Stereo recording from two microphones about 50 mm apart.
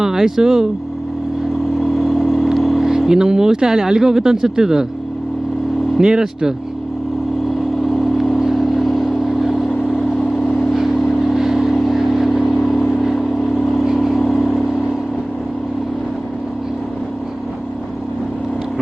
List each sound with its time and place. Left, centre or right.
0.0 s speech: centre
1.8 s vehicle: centre
3.1 s speech: centre
6.0 s speech: centre
7.8 s vehicle: centre
10.4 s vehicle: left
10.7 s vehicle: centre